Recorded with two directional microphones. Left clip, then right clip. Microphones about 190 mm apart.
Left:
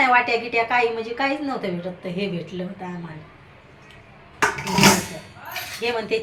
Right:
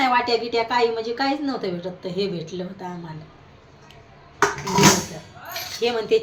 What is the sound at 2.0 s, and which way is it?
Speech, 25° left (ahead or behind).